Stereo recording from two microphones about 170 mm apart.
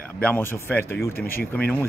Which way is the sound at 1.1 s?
60° left (ahead or behind).